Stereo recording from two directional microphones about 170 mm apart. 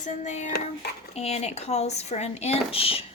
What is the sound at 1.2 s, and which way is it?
Speech, 40° left (ahead or behind).